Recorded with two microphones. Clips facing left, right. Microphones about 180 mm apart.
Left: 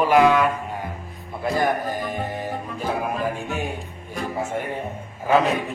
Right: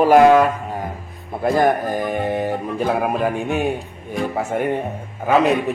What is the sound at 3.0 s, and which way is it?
Speech, 65° right (ahead or behind).